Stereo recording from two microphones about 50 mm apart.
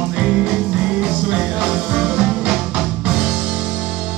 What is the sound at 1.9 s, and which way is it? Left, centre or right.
Music, centre.